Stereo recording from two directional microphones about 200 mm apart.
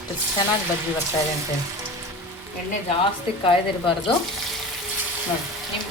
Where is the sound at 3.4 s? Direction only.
25° left (ahead or behind).